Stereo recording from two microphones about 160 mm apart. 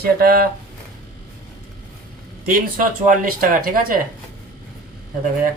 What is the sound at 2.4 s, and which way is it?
Speech, 60° right (ahead or behind).